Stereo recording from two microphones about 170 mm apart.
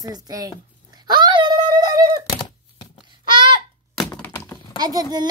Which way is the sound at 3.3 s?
25° right (ahead or behind).